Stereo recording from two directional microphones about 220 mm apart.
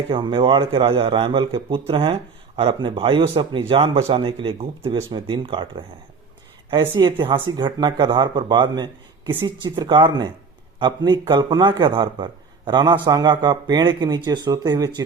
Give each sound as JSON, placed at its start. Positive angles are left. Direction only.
{"t": 0.1, "sound": "speech", "side_deg": -25}